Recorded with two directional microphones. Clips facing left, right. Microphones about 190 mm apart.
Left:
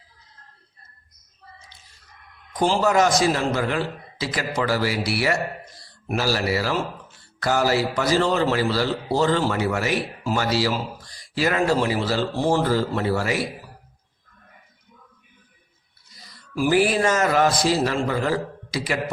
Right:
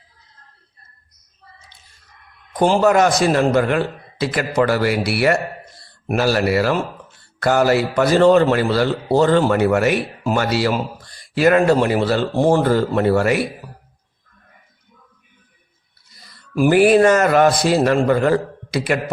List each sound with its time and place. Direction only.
2.5 s a man's voice: 60° right (ahead or behind)
16.6 s a man's voice: 60° right (ahead or behind)